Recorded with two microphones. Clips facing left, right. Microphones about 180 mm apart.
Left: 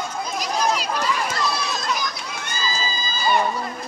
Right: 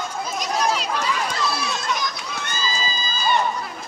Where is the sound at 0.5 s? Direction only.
Centre (ahead or behind).